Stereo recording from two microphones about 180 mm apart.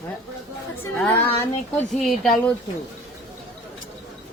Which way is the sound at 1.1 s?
10° left (ahead or behind).